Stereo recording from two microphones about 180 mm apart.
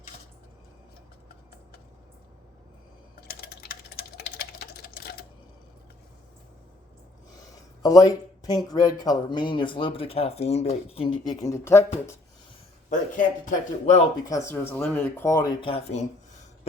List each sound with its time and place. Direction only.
3.2 s typing: 60° left (ahead or behind)
7.8 s speech: 20° left (ahead or behind)
12.9 s speech: 45° left (ahead or behind)
14.3 s speech: 15° left (ahead or behind)
15.6 s speech: 35° left (ahead or behind)